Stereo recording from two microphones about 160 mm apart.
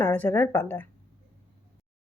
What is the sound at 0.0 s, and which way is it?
Speech, 10° left (ahead or behind).